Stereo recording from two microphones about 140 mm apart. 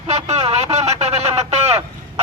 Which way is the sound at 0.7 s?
50° right (ahead or behind).